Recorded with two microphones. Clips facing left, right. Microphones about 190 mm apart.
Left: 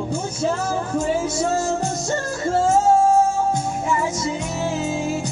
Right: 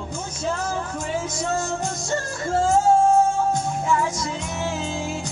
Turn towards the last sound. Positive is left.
turn(degrees=5)  # may be behind; listen again after turning